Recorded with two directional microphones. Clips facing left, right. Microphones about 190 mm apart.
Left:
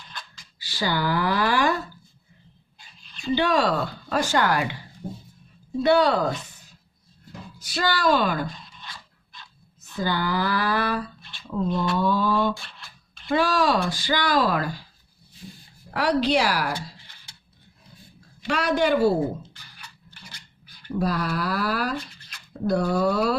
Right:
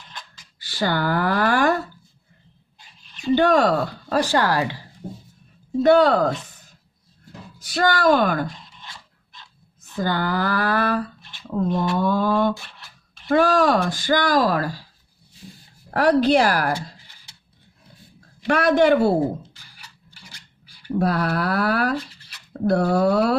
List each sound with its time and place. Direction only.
0.6 s speech: 50° right (ahead or behind)
3.3 s speech: 50° right (ahead or behind)
4.1 s speech: 35° right (ahead or behind)
5.8 s speech: 50° right (ahead or behind)
7.7 s speech: 50° right (ahead or behind)
8.4 s a sound: 25° right (ahead or behind)
10.0 s speech: 50° right (ahead or behind)
11.9 s speech: 50° right (ahead or behind)
15.9 s speech: 50° right (ahead or behind)
18.4 s speech: 55° right (ahead or behind)
20.7 s a sound: 10° right (ahead or behind)
21.0 s speech: 65° right (ahead or behind)